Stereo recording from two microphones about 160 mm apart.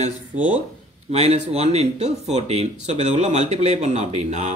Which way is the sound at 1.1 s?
40° right (ahead or behind).